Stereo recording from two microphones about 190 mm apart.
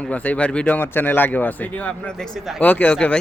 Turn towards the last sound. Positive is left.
turn(degrees=5)  # may be behind; listen again after turning